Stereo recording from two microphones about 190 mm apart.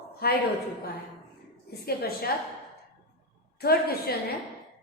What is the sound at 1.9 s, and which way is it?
Speech, 55° left (ahead or behind).